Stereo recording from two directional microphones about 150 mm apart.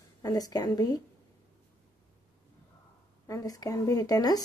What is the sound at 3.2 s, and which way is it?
Speech, 20° left (ahead or behind).